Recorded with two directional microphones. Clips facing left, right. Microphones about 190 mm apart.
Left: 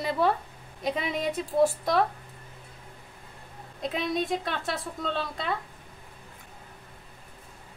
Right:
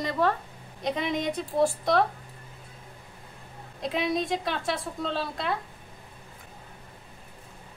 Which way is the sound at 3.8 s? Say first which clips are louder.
Right 1 dB; centre (ahead or behind).